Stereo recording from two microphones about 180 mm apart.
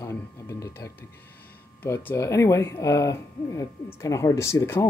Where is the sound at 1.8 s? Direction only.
10° left (ahead or behind).